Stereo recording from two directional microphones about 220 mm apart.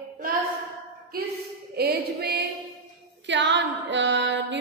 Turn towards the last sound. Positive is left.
turn(degrees=-55)  # may be behind; listen again after turning